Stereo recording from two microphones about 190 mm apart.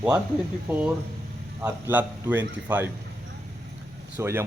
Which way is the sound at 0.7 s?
10° right (ahead or behind).